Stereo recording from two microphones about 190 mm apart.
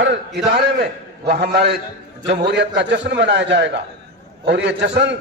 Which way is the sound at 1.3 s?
60° right (ahead or behind).